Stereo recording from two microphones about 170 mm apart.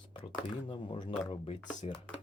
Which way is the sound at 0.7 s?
30° left (ahead or behind).